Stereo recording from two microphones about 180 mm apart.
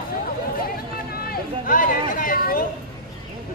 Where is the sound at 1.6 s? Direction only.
50° left (ahead or behind).